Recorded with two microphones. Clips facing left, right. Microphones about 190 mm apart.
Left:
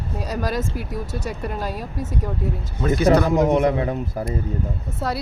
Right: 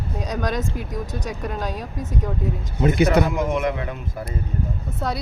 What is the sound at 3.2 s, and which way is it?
Speech, 35° left (ahead or behind).